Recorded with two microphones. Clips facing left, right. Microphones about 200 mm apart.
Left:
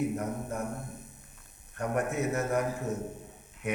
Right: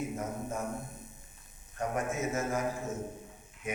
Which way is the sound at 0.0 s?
65° left (ahead or behind).